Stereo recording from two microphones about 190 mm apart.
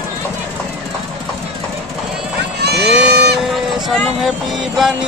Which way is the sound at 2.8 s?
Centre (ahead or behind).